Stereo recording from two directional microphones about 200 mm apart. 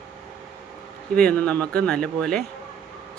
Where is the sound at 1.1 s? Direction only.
5° left (ahead or behind).